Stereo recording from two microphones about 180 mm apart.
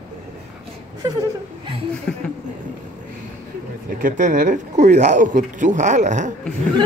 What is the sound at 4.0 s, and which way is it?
Speech, 45° right (ahead or behind).